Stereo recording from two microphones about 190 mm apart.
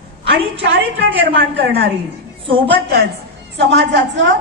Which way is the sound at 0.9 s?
65° right (ahead or behind).